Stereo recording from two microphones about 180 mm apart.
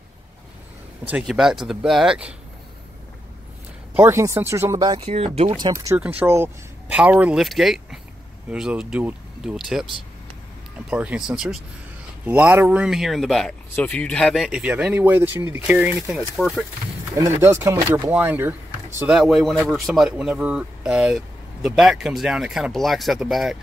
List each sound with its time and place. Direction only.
1.0 s speech: 5° right (ahead or behind)
3.9 s speech: 10° right (ahead or behind); by 5.5 s 35° right (ahead or behind)
5.5 s speech: 20° right (ahead or behind)
5.9 s speech: 10° right (ahead or behind)
10.9 s speech: 5° right (ahead or behind)
17.1 s speech: 15° right (ahead or behind)